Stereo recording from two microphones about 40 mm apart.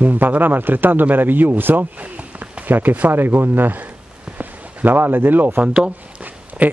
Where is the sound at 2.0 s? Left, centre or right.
Right.